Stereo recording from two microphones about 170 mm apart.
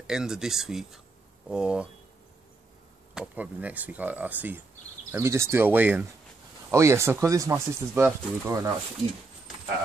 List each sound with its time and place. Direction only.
0.0 s speech: 5° right (ahead or behind)
3.2 s speech: 10° right (ahead or behind)